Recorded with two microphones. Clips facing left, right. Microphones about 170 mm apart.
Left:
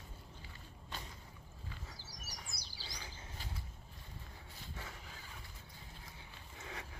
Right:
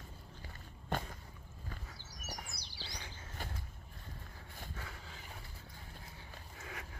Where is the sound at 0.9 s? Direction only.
55° right (ahead or behind).